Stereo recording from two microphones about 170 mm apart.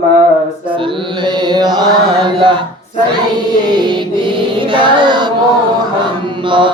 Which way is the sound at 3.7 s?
25° right (ahead or behind).